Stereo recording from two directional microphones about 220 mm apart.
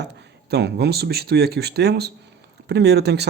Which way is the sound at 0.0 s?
50° right (ahead or behind).